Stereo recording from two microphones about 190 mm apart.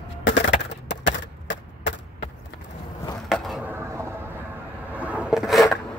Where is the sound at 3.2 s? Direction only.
Centre (ahead or behind).